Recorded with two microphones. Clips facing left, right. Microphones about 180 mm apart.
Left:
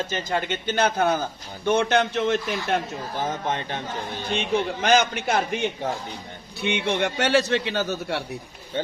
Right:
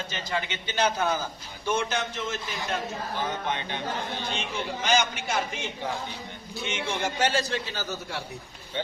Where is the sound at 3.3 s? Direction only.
45° left (ahead or behind).